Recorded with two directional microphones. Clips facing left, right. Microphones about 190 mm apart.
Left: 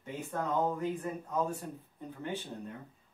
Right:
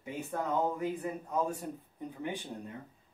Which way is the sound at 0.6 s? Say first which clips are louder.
Even; 10° right (ahead or behind).